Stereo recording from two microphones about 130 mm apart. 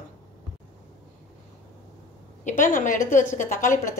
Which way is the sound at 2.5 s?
80° left.